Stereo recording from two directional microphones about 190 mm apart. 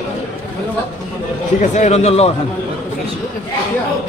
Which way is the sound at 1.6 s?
40° left (ahead or behind).